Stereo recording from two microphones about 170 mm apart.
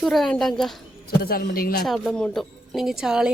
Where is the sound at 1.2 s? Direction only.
60° left (ahead or behind).